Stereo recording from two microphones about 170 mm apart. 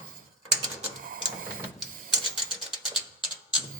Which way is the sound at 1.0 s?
55° right (ahead or behind).